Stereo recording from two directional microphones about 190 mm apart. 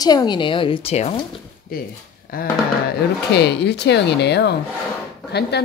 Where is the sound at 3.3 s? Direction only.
60° left (ahead or behind).